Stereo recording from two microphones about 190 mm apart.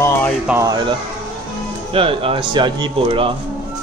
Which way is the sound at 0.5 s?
15° right (ahead or behind).